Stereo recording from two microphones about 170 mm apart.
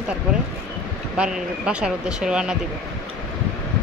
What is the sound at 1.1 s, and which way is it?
Speech, 5° right (ahead or behind).